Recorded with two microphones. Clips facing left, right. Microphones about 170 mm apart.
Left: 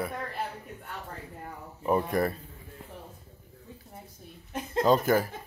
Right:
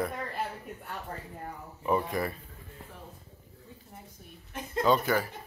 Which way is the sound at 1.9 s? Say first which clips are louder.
Left 3 dB; 45° left (ahead or behind).